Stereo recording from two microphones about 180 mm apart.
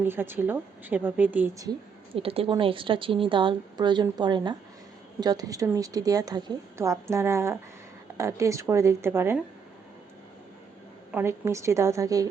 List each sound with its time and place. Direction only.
0.0 s a woman's voice: 10° right (ahead or behind)
2.1 s a woman's voice: 30° right (ahead or behind); by 9.4 s 15° right (ahead or behind)
11.1 s a woman's voice: 15° right (ahead or behind)